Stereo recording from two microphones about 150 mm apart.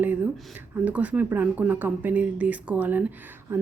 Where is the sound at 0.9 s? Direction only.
10° right (ahead or behind).